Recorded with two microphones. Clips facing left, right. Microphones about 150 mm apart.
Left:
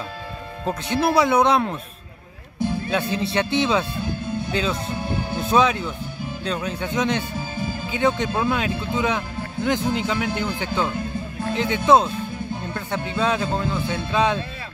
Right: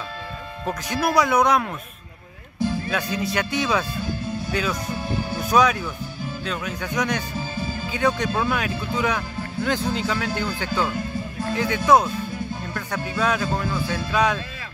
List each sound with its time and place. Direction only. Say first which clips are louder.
0.7 s speech: left 3 dB; 25° left (ahead or behind)
2.9 s speech: left 2 dB; 30° left (ahead or behind)